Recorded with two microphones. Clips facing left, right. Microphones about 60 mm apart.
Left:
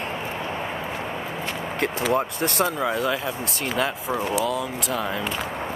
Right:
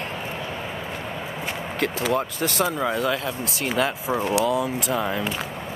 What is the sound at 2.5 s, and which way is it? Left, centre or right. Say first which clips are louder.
Speech: even; centre.